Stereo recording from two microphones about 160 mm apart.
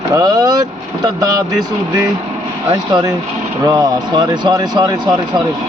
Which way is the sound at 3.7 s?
25° right (ahead or behind).